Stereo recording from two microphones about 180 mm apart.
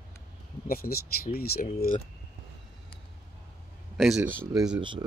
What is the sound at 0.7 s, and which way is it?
Speech, 55° left (ahead or behind).